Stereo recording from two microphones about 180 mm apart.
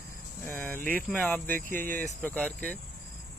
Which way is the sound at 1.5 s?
50° right (ahead or behind).